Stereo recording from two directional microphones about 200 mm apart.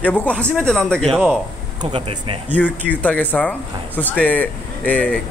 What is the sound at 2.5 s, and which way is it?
Speech, 5° left (ahead or behind).